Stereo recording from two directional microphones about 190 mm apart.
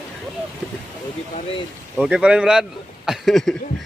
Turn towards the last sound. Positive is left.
turn(degrees=0)  # may be behind; listen again after turning